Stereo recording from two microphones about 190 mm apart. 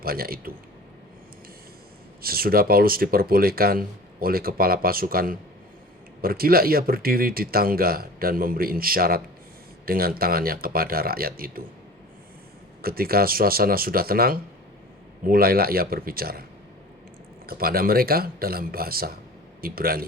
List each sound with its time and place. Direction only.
0.0 s speech: 50° right (ahead or behind)
2.2 s speech: 50° right (ahead or behind)
12.8 s speech: 50° right (ahead or behind)
17.4 s speech: 50° right (ahead or behind)